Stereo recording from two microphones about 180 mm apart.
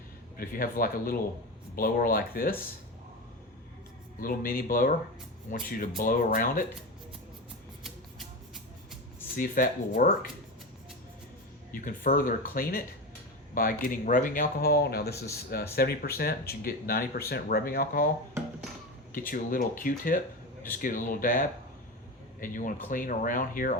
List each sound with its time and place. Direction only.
0.3 s speech: 55° left (ahead or behind)
4.2 s speech: 55° left (ahead or behind)
9.3 s speech: 50° left (ahead or behind)
11.7 s speech: 50° left (ahead or behind)
19.3 s speech: 50° left (ahead or behind)